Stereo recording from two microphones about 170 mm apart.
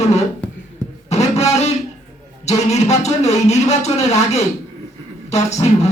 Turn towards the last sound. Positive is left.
turn(degrees=40)  # may be behind; listen again after turning